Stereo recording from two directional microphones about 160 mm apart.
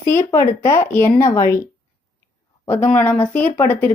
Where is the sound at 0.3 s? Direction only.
15° left (ahead or behind).